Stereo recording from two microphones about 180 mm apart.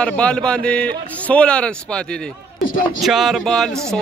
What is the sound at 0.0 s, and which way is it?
Speech, 5° left (ahead or behind).